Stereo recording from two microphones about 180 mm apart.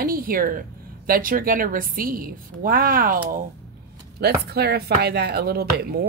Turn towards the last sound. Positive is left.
turn(degrees=-60)  # may be behind; listen again after turning